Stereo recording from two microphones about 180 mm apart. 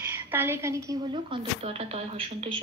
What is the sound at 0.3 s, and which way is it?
Speech, 15° right (ahead or behind).